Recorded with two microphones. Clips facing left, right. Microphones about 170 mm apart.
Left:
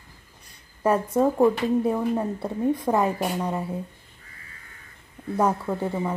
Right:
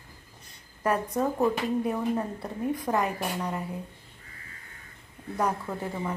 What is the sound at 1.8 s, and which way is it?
Speech, 30° left (ahead or behind).